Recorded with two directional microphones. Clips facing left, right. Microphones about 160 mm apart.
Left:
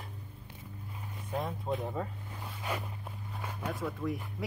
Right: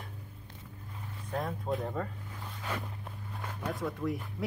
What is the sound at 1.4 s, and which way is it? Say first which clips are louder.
Speech: right 1 dB; centre (ahead or behind).